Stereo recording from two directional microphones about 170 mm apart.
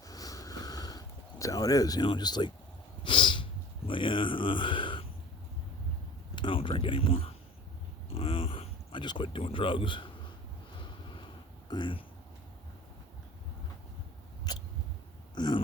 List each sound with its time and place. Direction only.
0.0 s sniff: 20° left (ahead or behind)
3.0 s snort: 30° left (ahead or behind)
3.8 s speech: 30° left (ahead or behind)
6.3 s speech: 30° left (ahead or behind)
8.1 s a sound: 35° left (ahead or behind)
9.4 s speech: 30° left (ahead or behind)
11.7 s speech: 30° left (ahead or behind)
14.4 s a sound: 25° left (ahead or behind)
15.4 s throat clearing: 25° left (ahead or behind)